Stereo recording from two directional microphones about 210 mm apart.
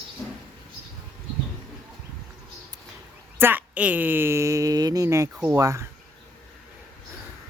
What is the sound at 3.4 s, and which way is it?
A woman's voice, 10° right (ahead or behind).